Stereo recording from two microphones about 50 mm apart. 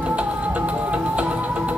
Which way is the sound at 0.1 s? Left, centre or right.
Right.